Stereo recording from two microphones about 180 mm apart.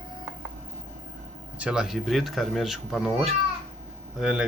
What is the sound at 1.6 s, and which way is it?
Speech, 5° right (ahead or behind).